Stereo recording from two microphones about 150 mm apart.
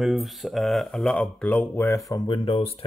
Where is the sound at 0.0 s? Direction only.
Centre (ahead or behind).